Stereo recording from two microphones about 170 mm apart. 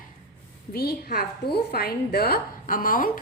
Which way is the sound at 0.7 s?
65° left (ahead or behind).